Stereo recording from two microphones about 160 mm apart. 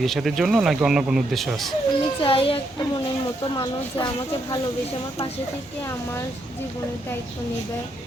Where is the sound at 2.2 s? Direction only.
35° left (ahead or behind).